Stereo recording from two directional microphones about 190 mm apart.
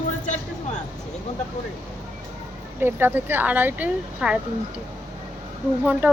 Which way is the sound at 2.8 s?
10° right (ahead or behind).